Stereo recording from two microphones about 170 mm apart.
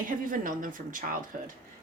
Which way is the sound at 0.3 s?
55° right (ahead or behind).